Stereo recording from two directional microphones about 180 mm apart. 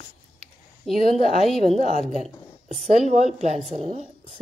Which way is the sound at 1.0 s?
35° left (ahead or behind).